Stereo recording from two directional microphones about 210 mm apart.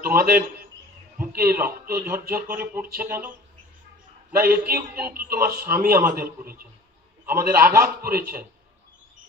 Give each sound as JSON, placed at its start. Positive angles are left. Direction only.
{"t": 0.0, "sound": "a man's voice", "side_deg": -45}
{"t": 4.4, "sound": "a man's voice", "side_deg": -45}